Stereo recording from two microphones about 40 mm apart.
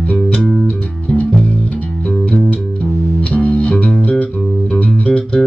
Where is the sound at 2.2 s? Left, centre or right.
Left.